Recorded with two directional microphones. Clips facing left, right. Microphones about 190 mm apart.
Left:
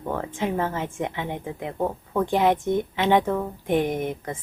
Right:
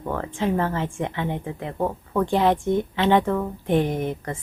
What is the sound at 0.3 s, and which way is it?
Speech, 15° left (ahead or behind).